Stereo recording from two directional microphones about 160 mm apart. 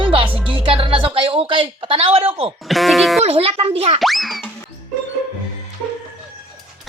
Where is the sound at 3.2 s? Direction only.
35° right (ahead or behind).